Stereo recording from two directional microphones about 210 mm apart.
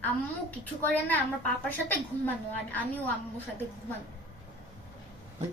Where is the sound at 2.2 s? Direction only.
10° left (ahead or behind).